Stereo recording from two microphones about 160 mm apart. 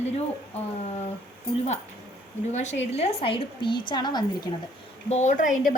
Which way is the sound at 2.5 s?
45° left (ahead or behind).